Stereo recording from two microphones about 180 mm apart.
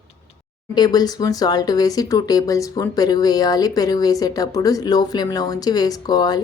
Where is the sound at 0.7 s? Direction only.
20° left (ahead or behind).